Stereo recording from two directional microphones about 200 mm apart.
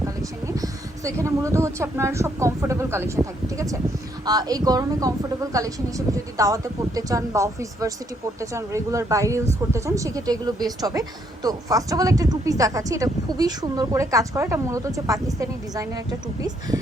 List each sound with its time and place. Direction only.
0.0 s speech: 15° right (ahead or behind)